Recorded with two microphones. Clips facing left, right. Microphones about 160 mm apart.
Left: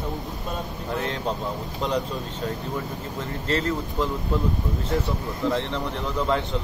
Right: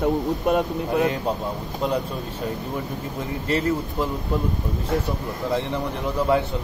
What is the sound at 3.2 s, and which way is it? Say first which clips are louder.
Speech: right 2 dB; 10° right (ahead or behind).